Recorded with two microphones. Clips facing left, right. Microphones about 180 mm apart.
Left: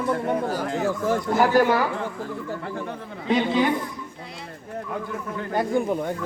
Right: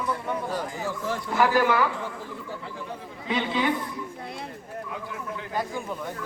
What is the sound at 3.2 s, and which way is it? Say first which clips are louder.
Speech: left 5 dB; 40° left (ahead or behind).